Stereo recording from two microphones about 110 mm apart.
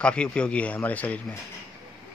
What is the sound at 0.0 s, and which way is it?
Speech, 10° left (ahead or behind).